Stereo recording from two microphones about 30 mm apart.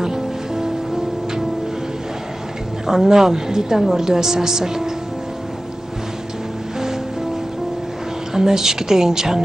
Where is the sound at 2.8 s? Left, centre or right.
Centre.